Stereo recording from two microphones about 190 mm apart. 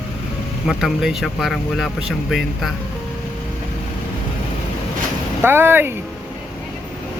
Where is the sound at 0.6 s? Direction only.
Centre (ahead or behind).